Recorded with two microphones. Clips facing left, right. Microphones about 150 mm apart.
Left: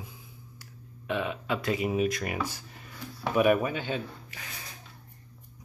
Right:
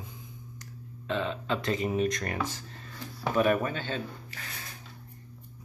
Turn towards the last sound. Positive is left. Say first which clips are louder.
# left 1 dB
turn(degrees=15)  # may be behind; listen again after turning